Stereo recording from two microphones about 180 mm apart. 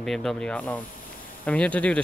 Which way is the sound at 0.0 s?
Centre (ahead or behind).